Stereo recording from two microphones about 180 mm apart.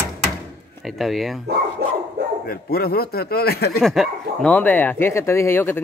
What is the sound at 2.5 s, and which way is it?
Speech, 55° left (ahead or behind).